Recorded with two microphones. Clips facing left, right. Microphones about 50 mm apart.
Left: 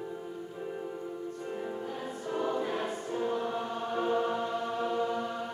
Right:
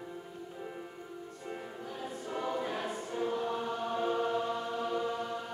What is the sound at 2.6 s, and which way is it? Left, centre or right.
Choir, left.